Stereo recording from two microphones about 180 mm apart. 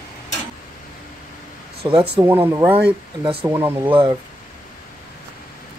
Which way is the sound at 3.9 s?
30° right (ahead or behind).